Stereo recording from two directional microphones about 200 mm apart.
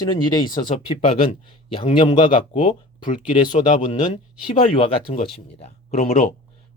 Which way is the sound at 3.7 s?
30° left (ahead or behind).